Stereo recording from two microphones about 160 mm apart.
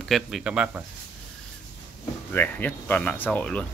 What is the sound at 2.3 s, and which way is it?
Speech, 10° left (ahead or behind).